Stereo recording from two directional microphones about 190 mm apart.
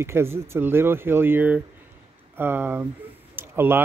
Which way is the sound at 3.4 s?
10° right (ahead or behind).